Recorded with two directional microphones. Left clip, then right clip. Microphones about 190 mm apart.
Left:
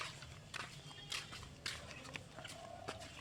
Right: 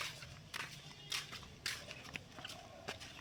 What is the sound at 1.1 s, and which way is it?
Biting, 10° right (ahead or behind).